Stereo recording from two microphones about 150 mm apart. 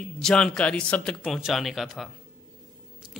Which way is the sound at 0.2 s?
5° left (ahead or behind).